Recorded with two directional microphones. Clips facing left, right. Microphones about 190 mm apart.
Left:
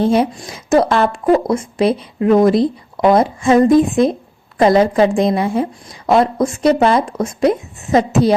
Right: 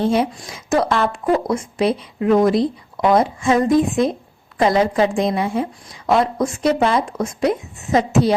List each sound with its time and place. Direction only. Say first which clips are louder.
0.0 s speech: left 4 dB; 35° left (ahead or behind)